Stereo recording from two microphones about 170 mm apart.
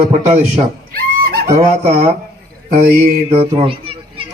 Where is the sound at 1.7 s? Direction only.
40° right (ahead or behind).